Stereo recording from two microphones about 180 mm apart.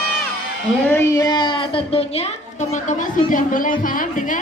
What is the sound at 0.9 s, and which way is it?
A child's voice, 15° left (ahead or behind).